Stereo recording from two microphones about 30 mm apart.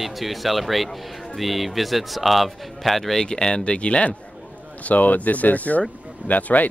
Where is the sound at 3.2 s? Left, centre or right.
Left.